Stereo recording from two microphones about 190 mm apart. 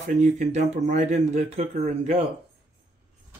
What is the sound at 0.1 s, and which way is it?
Speech, 40° right (ahead or behind).